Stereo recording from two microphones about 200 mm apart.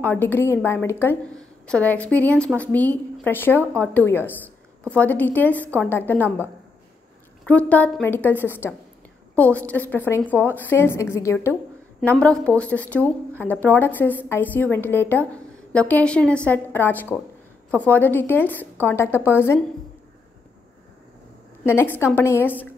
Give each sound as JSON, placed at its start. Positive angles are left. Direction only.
{"t": 0.0, "sound": "a woman's voice", "side_deg": 10}
{"t": 21.6, "sound": "a woman's voice", "side_deg": 10}